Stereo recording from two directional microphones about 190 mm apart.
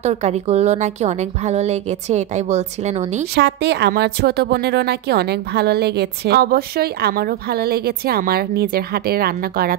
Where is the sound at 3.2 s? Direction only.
60° right (ahead or behind).